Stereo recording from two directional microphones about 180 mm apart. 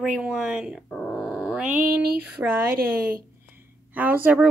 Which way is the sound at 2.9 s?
55° right (ahead or behind).